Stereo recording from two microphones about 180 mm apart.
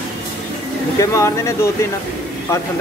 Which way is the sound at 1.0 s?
15° left (ahead or behind).